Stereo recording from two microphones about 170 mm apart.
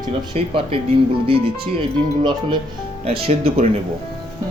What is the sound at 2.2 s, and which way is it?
Speech, 25° right (ahead or behind).